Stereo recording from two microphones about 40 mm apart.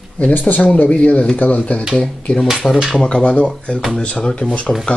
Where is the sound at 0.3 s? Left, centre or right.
Left.